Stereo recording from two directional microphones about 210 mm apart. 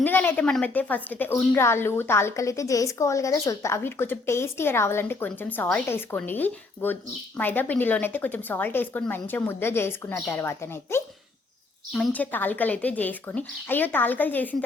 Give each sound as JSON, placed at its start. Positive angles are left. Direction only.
{"t": 0.0, "sound": "a woman's voice", "side_deg": 10}